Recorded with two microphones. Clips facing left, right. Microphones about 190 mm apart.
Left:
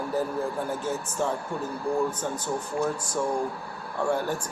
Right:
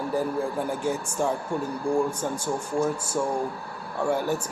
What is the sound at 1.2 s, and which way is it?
A woman's voice, 10° right (ahead or behind).